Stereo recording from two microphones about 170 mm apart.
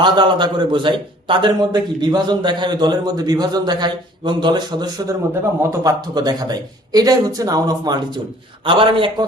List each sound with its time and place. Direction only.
0.0 s a man's voice: 25° right (ahead or behind)